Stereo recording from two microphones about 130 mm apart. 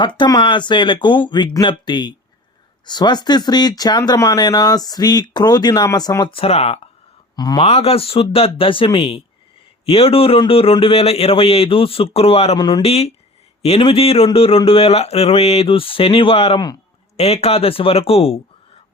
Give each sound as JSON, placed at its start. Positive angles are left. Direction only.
{"t": 0.2, "sound": "speech", "side_deg": 35}
{"t": 6.3, "sound": "a man's voice", "side_deg": 50}
{"t": 7.3, "sound": "speech", "side_deg": 30}
{"t": 7.6, "sound": "a man's voice", "side_deg": 50}
{"t": 12.5, "sound": "speech", "side_deg": 30}
{"t": 12.8, "sound": "a man's voice", "side_deg": 50}